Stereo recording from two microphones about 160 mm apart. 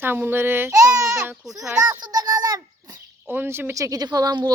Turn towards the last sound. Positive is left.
turn(degrees=-25)  # may be behind; listen again after turning